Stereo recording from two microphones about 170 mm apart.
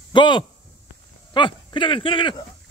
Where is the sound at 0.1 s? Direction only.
30° left (ahead or behind).